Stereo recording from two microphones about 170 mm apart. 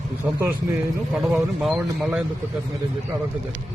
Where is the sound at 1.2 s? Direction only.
Centre (ahead or behind).